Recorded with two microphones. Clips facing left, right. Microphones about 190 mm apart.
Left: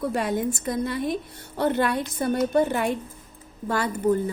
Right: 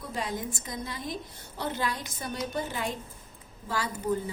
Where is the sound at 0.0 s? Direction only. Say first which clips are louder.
Left 9 dB; 65° left (ahead or behind).